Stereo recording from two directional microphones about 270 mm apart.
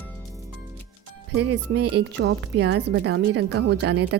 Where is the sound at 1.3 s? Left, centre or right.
Right.